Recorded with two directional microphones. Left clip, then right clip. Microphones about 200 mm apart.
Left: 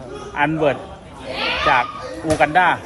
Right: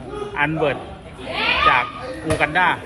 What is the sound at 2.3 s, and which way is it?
Speech, 55° left (ahead or behind).